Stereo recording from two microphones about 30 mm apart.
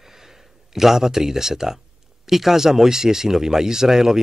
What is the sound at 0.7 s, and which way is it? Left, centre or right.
Speech, centre.